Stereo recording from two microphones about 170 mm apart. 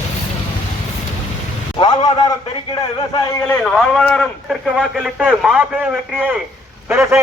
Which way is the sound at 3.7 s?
Centre (ahead or behind).